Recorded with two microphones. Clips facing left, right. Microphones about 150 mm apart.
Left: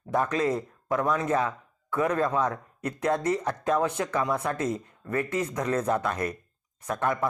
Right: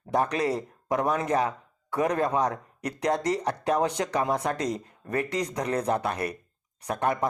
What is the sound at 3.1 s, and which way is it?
Speech, 35° right (ahead or behind).